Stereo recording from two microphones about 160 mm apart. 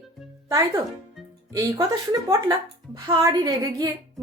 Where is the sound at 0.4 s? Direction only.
20° right (ahead or behind).